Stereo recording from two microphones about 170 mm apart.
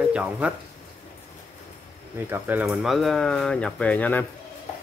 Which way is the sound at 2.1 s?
15° right (ahead or behind).